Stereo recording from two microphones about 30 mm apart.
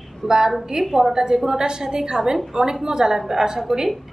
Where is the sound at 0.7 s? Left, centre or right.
Centre.